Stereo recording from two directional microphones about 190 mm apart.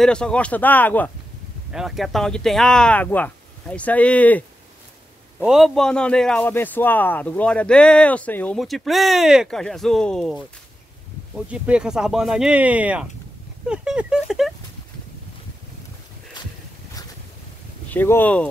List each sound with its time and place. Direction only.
0.0 s speech: 5° left (ahead or behind)
1.7 s a man's voice: centre (ahead or behind)
17.8 s speech: 10° left (ahead or behind)